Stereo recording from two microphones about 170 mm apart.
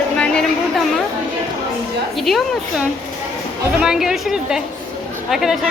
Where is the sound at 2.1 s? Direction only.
Centre (ahead or behind).